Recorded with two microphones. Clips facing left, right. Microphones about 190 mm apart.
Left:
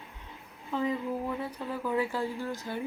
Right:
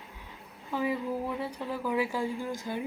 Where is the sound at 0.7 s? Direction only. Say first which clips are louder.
Even; 10° right (ahead or behind).